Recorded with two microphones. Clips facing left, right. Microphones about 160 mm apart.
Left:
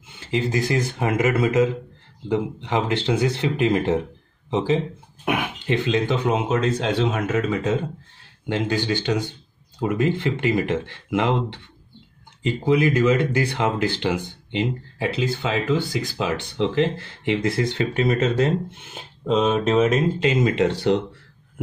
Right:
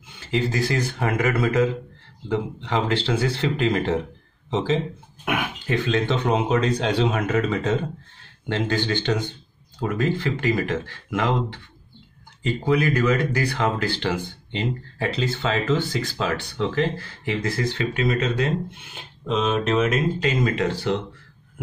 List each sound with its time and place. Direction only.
0.3 s speech: 20° left (ahead or behind)
19.7 s speech: 30° left (ahead or behind)